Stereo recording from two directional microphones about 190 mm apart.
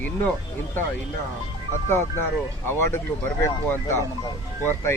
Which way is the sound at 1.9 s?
15° left (ahead or behind).